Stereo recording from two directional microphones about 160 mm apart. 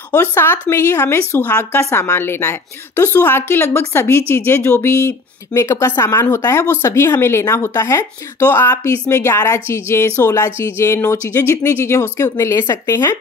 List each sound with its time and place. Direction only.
0.1 s speech: 15° left (ahead or behind)